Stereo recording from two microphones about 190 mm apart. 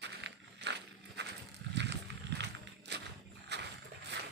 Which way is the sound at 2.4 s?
65° right (ahead or behind).